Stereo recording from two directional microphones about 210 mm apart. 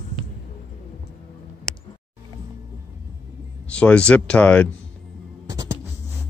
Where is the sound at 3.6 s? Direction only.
5° left (ahead or behind).